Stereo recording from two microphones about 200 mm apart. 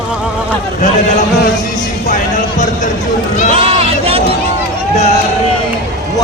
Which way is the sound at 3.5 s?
30° right (ahead or behind).